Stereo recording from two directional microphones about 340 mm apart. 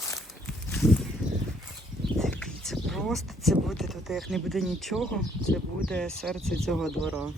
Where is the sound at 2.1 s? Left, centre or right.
Centre.